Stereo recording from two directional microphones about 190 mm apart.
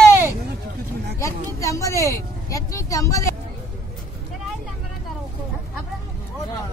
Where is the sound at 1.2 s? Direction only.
15° left (ahead or behind).